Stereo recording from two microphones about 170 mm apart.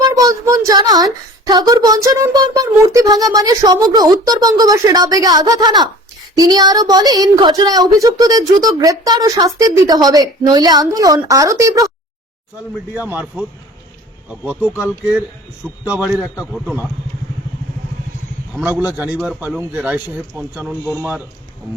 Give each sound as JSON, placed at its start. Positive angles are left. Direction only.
{"t": 0.2, "sound": "a child's voice", "side_deg": -20}
{"t": 12.9, "sound": "a man's voice", "side_deg": -10}
{"t": 15.9, "sound": "a man's voice", "side_deg": -5}
{"t": 18.5, "sound": "a man's voice", "side_deg": -10}